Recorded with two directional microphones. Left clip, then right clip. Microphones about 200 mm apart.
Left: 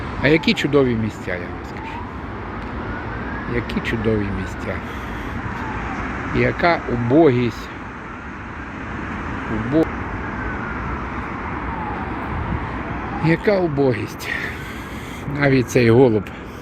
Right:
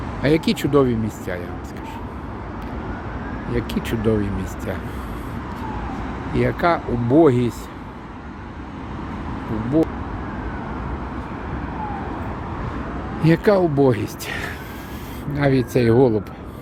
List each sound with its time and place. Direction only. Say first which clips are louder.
0.2 s speech: left 3 dB; 5° right (ahead or behind)
3.5 s speech: left 1 dB; 15° right (ahead or behind)
6.3 s speech: left 1 dB; 5° right (ahead or behind)
9.7 s speech: left 1 dB; 10° right (ahead or behind)
13.2 s speech: right 2 dB; 20° right (ahead or behind)
15.4 s speech: left 2 dB; centre (ahead or behind)